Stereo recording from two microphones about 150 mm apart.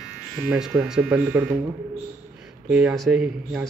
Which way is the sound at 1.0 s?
15° right (ahead or behind).